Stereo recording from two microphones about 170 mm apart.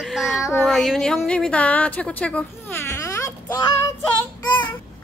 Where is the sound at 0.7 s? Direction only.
Centre (ahead or behind).